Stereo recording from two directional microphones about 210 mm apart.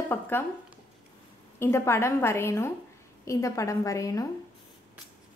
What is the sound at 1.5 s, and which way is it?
A woman's voice, 10° left (ahead or behind).